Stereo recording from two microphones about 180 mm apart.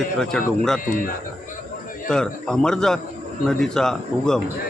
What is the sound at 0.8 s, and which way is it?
Speech, 50° left (ahead or behind).